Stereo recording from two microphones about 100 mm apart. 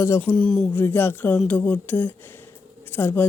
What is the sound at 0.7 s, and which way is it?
A woman's voice, 20° left (ahead or behind).